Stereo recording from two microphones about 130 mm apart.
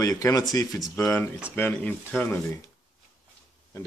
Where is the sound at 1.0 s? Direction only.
15° left (ahead or behind).